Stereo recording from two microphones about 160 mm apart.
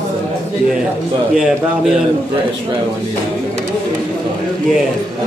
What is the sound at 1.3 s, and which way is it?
Speech, 5° right (ahead or behind).